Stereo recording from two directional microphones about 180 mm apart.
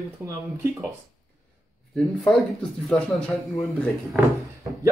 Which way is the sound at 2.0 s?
Centre (ahead or behind).